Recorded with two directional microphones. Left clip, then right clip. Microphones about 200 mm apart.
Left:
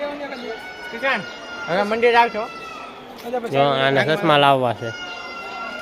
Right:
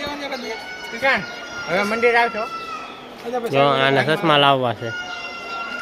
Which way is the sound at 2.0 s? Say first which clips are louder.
Left 2 dB; 35° left (ahead or behind).